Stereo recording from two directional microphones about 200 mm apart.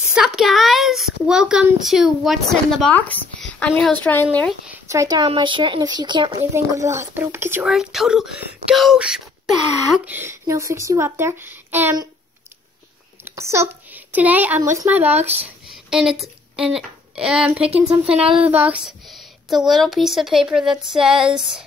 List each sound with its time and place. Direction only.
0.1 s a woman's voice: centre (ahead or behind)
4.6 s speech: 15° right (ahead or behind)
13.2 s a woman's voice: 15° right (ahead or behind)
17.6 s speech: 30° right (ahead or behind)
18.0 s speech: 5° right (ahead or behind)